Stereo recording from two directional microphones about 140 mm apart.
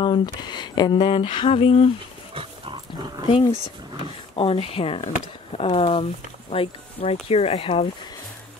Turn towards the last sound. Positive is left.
turn(degrees=45)  # may be behind; listen again after turning